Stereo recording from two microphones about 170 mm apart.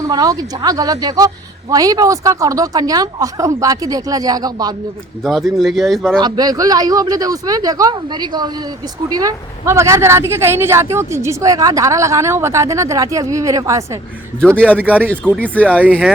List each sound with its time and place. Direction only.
0.0 s speech: 20° right (ahead or behind)
5.2 s speech: centre (ahead or behind)
6.1 s a woman's voice: 25° right (ahead or behind)
14.6 s speech: 10° left (ahead or behind)
15.8 s a woman's voice: 10° right (ahead or behind)